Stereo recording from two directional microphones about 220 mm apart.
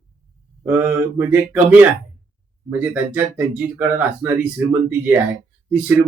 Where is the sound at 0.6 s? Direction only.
10° right (ahead or behind).